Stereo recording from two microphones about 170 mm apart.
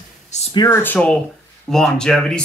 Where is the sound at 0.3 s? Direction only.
40° left (ahead or behind).